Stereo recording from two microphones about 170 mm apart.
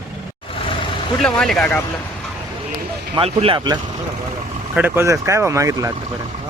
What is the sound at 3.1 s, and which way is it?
Speech, 35° right (ahead or behind).